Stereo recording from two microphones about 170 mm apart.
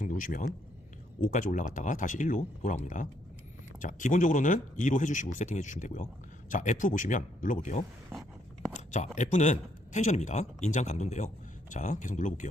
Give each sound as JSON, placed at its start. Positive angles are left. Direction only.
{"t": 0.0, "sound": "speech", "side_deg": 50}
{"t": 9.1, "sound": "speech", "side_deg": 45}